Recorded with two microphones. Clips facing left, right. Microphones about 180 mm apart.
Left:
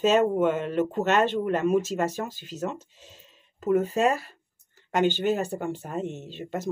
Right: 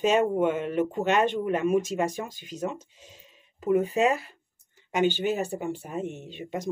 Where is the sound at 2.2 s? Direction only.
50° left (ahead or behind).